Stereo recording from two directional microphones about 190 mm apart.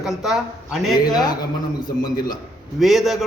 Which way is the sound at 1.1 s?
20° left (ahead or behind).